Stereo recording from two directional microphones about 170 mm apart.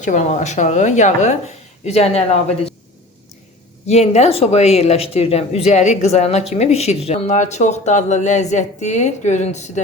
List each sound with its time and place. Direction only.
0.0 s speech: 45° left (ahead or behind)
3.8 s speech: 40° left (ahead or behind)